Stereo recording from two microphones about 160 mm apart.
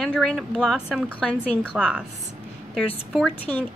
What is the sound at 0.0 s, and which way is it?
A woman's voice, centre (ahead or behind).